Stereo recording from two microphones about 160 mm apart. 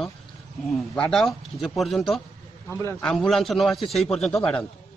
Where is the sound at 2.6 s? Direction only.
15° left (ahead or behind).